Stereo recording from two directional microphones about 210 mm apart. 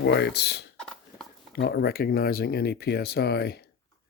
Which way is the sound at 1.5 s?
50° left (ahead or behind).